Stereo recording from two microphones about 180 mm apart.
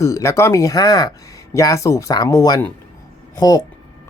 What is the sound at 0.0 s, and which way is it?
Speech, 15° left (ahead or behind).